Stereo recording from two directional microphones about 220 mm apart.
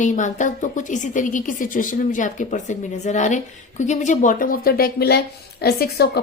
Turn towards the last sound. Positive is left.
turn(degrees=45)  # may be behind; listen again after turning